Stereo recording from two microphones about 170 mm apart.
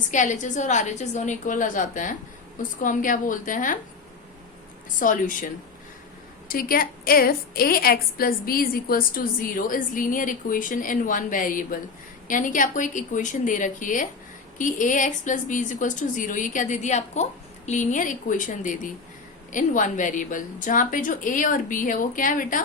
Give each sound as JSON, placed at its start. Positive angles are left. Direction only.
{"t": 0.1, "sound": "a woman's voice", "side_deg": 45}
{"t": 4.9, "sound": "a woman's voice", "side_deg": 50}
{"t": 6.5, "sound": "a woman's voice", "side_deg": 60}